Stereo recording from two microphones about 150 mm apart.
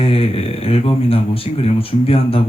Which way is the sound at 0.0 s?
40° left (ahead or behind).